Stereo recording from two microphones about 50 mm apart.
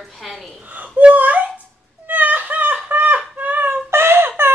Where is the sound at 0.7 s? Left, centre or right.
Right.